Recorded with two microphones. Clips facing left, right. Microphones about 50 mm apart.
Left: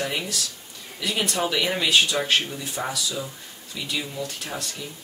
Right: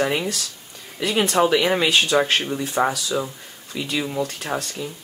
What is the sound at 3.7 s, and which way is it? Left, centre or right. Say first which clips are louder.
Speech: right 4 dB; right.